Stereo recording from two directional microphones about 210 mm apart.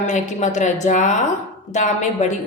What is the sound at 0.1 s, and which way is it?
A woman's voice, 35° left (ahead or behind).